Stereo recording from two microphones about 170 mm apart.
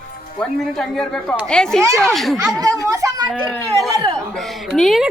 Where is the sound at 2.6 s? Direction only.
20° right (ahead or behind).